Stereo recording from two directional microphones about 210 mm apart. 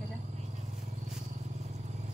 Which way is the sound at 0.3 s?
35° right (ahead or behind).